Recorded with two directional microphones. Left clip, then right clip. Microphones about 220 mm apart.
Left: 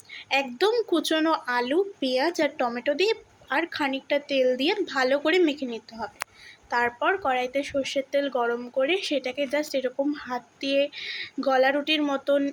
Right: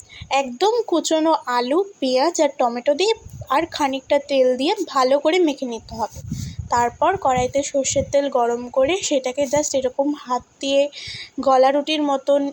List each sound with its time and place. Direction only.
0.3 s a woman's voice: 10° right (ahead or behind)